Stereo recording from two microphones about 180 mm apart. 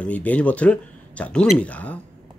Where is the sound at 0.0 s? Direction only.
10° left (ahead or behind).